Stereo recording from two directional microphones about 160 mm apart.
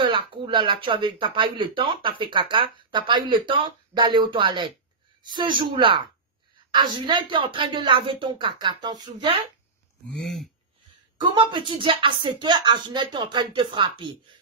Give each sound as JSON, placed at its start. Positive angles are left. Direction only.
{"t": 0.0, "sound": "speech", "side_deg": -30}
{"t": 11.1, "sound": "speech", "side_deg": -30}